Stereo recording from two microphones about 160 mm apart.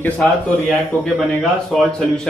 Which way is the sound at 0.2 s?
Centre (ahead or behind).